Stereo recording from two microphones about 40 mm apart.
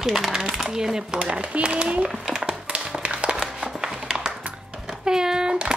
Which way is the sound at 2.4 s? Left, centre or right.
Right.